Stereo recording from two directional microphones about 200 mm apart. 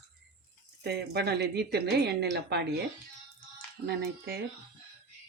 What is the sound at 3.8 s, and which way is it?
Speech, 50° right (ahead or behind).